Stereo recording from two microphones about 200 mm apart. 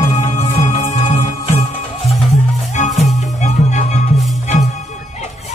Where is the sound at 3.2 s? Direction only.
35° left (ahead or behind).